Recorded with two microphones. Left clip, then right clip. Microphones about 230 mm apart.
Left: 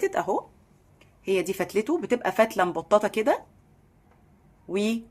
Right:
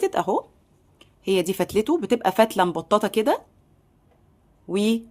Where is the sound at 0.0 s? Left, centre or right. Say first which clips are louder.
Right 3 dB; right.